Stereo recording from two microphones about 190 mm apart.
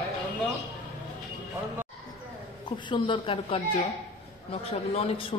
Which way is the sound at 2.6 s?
25° left (ahead or behind).